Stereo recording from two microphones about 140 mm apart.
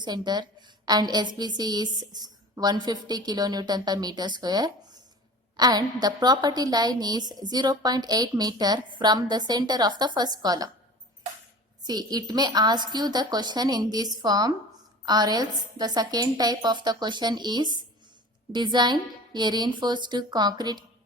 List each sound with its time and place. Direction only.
0.0 s a woman's voice: 30° right (ahead or behind)
11.8 s a woman's voice: 30° right (ahead or behind)